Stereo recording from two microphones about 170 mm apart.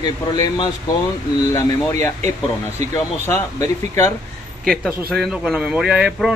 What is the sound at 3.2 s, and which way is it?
Speech, 15° left (ahead or behind).